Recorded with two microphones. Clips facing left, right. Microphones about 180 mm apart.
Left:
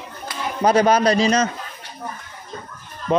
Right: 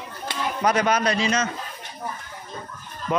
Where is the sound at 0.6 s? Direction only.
30° left (ahead or behind).